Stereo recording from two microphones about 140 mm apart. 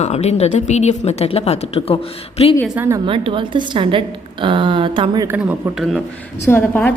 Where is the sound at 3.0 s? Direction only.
40° right (ahead or behind).